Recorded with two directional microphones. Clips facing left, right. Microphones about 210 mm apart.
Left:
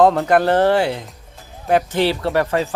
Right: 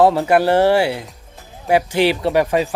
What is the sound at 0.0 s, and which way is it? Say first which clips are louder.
Speech: even; 5° right (ahead or behind).